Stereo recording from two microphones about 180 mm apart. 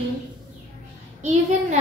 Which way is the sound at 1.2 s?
40° right (ahead or behind).